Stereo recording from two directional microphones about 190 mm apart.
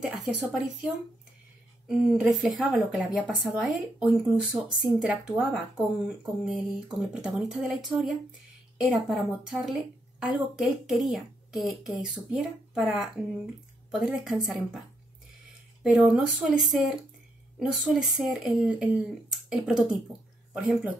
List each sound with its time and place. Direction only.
0.0 s speech: centre (ahead or behind)
1.9 s speech: 5° right (ahead or behind)
15.8 s speech: 5° right (ahead or behind)